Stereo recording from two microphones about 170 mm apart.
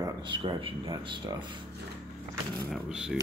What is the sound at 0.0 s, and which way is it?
Speech, 25° right (ahead or behind).